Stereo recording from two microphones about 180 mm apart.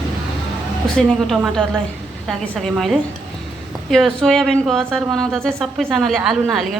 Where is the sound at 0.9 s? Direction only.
Centre (ahead or behind).